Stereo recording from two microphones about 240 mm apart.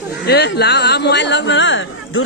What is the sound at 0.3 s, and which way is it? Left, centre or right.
Speech, left.